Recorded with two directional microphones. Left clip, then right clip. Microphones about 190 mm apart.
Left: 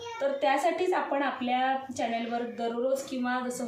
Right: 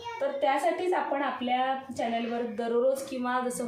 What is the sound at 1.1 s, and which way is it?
Speech, 10° right (ahead or behind).